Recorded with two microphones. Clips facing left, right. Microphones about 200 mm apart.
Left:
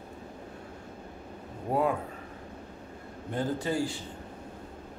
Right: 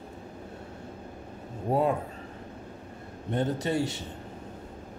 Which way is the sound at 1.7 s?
25° right (ahead or behind).